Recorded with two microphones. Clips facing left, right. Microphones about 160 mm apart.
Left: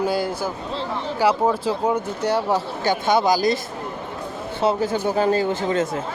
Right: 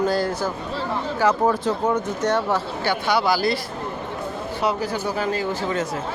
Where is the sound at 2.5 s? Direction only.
45° left (ahead or behind).